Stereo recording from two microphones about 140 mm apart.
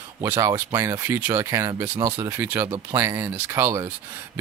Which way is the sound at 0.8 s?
20° right (ahead or behind).